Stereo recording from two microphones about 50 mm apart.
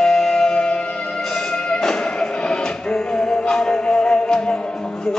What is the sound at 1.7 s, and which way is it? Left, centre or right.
Music, centre.